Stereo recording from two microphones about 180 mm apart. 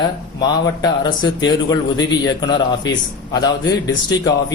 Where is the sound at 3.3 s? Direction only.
20° left (ahead or behind).